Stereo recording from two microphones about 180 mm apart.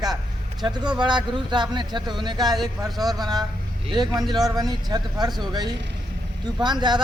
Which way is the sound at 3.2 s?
20° right (ahead or behind).